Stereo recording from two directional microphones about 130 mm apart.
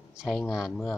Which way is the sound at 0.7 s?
10° left (ahead or behind).